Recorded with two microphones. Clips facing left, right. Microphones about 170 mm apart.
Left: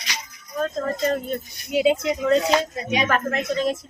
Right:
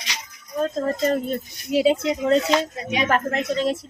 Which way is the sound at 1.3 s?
35° right (ahead or behind).